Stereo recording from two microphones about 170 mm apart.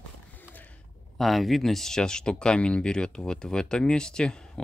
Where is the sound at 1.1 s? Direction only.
Centre (ahead or behind).